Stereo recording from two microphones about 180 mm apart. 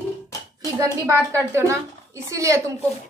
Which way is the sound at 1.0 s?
15° right (ahead or behind).